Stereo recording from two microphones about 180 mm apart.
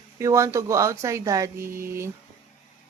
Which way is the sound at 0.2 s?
15° right (ahead or behind).